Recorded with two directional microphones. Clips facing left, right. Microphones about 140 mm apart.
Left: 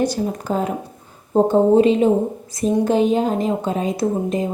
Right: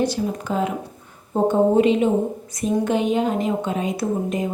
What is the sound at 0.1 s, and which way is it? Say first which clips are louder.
A woman's voice: left 2 dB; 40° left (ahead or behind).